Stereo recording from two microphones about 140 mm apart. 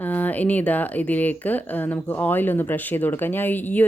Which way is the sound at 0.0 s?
10° left (ahead or behind).